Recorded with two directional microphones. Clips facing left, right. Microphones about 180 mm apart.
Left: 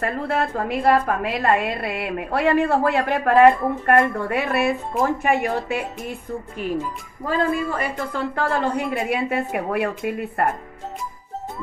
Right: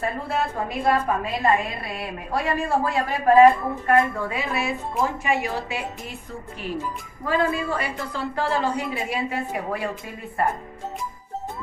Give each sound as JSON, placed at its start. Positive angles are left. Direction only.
{"t": 0.0, "sound": "a woman's voice", "side_deg": 65}
{"t": 7.2, "sound": "a woman's voice", "side_deg": 50}